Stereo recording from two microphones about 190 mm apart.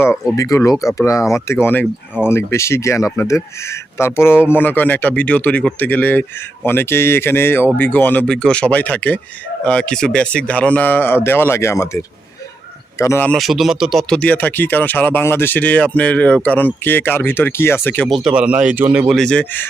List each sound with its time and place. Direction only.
0.0 s speech: 15° left (ahead or behind)